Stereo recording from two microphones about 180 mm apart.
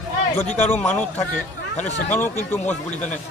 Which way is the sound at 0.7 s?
5° left (ahead or behind).